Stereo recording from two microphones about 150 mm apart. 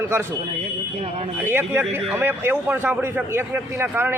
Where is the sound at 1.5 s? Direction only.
15° right (ahead or behind).